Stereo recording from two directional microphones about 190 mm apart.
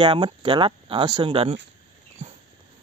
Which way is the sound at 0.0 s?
25° right (ahead or behind).